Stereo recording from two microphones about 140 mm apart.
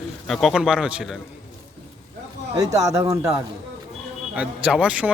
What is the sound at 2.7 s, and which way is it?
Speech, 20° right (ahead or behind).